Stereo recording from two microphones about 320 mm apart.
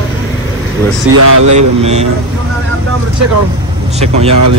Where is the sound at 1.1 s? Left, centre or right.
Right.